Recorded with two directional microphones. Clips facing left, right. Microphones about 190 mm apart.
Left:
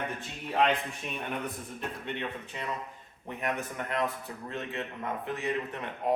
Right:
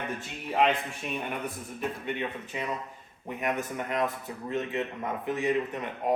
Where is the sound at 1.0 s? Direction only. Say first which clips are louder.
Right 6 dB; 5° right (ahead or behind).